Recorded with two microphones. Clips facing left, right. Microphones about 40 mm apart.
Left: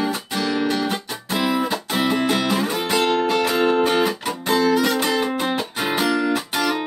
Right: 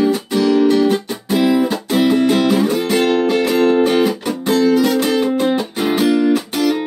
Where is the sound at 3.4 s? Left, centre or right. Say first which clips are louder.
Right 5 dB; centre.